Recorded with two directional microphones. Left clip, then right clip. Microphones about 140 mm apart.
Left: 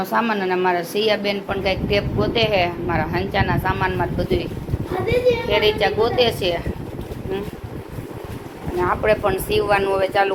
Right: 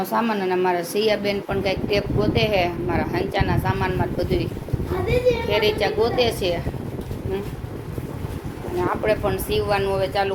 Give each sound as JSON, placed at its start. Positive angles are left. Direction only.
{"t": 0.0, "sound": "a woman's voice", "side_deg": -30}
{"t": 2.2, "sound": "a woman's voice", "side_deg": -30}
{"t": 5.5, "sound": "speech", "side_deg": -25}
{"t": 8.9, "sound": "speech", "side_deg": -10}